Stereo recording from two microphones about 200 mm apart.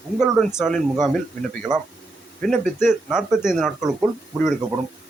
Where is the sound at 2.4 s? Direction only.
Centre (ahead or behind).